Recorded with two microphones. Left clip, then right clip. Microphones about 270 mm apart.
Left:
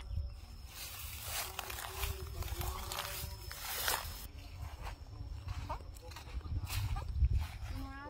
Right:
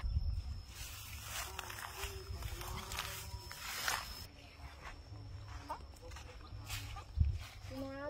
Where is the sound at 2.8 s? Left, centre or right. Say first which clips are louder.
Even; left.